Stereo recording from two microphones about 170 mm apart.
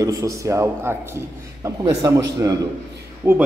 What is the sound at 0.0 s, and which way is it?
A man's voice, 20° right (ahead or behind).